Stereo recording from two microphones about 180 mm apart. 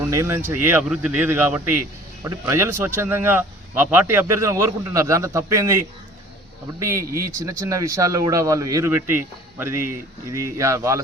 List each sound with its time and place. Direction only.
0.1 s speech: 15° right (ahead or behind)
6.8 s speech: 15° right (ahead or behind)